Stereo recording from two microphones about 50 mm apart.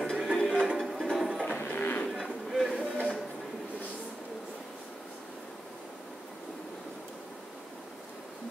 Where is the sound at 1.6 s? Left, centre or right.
Left.